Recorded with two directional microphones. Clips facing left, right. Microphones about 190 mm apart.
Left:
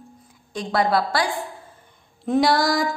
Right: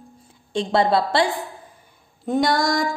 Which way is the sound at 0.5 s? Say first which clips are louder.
Right 2 dB; 25° right (ahead or behind).